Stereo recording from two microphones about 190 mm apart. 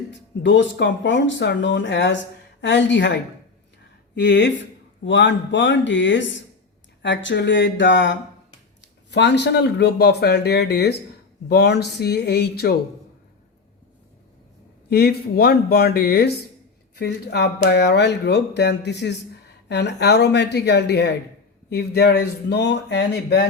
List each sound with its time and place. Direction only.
0.4 s speech: 70° left (ahead or behind)
14.8 s speech: 55° left (ahead or behind)